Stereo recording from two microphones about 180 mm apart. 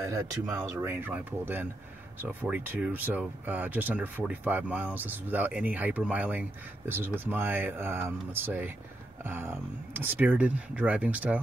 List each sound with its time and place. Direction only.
0.0 s speech: 15° right (ahead or behind)